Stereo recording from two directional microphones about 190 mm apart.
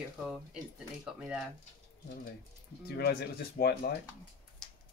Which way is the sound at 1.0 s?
5° right (ahead or behind).